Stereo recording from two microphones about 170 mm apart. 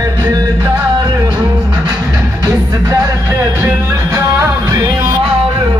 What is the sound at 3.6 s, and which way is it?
Music, 15° right (ahead or behind).